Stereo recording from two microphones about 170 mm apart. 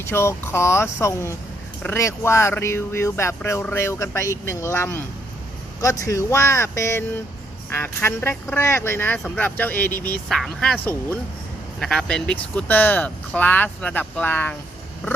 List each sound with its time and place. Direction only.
0.0 s speech: 15° left (ahead or behind)